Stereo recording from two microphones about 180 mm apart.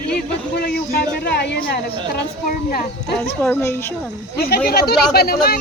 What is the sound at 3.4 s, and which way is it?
Speech, 10° left (ahead or behind).